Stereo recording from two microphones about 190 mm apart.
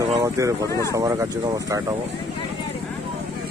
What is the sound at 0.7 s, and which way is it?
Speech, 15° left (ahead or behind).